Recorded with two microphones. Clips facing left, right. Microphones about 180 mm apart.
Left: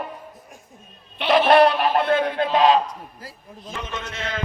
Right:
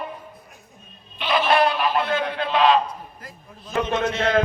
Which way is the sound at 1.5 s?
65° left (ahead or behind).